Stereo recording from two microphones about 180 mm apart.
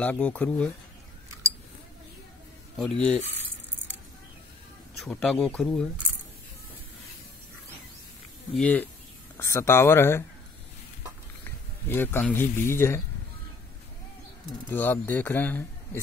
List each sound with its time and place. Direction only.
0.0 s a man's voice: 10° left (ahead or behind)
2.8 s a man's voice: 5° left (ahead or behind)
4.9 s speech: centre (ahead or behind)
8.5 s a man's voice: 5° left (ahead or behind)
11.9 s a man's voice: 10° left (ahead or behind)
14.7 s a man's voice: 10° left (ahead or behind)